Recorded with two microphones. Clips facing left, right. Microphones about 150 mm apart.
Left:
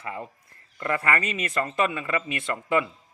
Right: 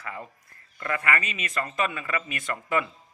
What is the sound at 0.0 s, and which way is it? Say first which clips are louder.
Speech: left 3 dB; 25° left (ahead or behind).